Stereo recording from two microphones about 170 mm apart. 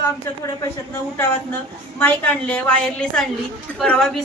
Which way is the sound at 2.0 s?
10° left (ahead or behind).